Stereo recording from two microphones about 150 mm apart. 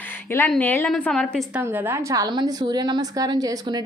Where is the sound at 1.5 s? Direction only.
10° right (ahead or behind).